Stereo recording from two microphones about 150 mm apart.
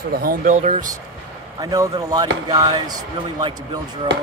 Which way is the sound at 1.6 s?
25° right (ahead or behind).